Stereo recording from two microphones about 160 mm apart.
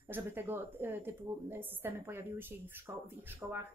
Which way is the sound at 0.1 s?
15° right (ahead or behind).